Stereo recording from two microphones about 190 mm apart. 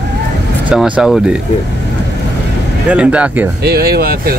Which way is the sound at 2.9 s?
5° right (ahead or behind).